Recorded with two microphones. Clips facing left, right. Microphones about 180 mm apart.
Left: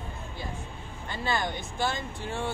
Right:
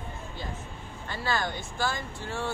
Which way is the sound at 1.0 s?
20° left (ahead or behind).